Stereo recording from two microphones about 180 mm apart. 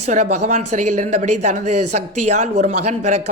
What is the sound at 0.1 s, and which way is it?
Speech, 40° right (ahead or behind).